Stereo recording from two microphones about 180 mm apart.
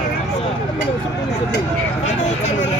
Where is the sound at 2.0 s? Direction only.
40° left (ahead or behind).